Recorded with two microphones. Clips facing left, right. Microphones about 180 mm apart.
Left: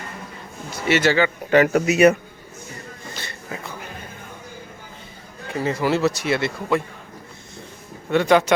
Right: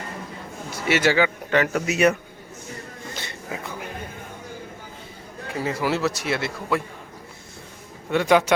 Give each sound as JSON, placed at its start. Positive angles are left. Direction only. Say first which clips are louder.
{"t": 0.7, "sound": "a man's voice", "louder": "left 2 dB", "side_deg": -10}
{"t": 1.5, "sound": "speech", "louder": "left 6 dB", "side_deg": 10}
{"t": 3.2, "sound": "a sound", "louder": "right 1 dB", "side_deg": -20}
{"t": 5.5, "sound": "speech", "louder": "left 3 dB", "side_deg": -5}
{"t": 8.1, "sound": "a man's voice", "louder": "left 2 dB", "side_deg": -5}